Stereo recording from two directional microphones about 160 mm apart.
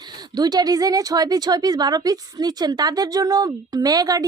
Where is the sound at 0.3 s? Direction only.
25° right (ahead or behind).